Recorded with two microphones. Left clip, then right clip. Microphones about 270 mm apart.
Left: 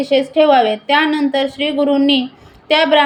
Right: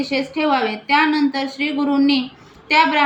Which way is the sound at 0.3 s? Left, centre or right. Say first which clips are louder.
Left 8 dB; centre.